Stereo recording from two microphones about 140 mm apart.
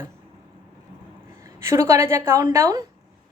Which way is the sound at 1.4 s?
20° right (ahead or behind).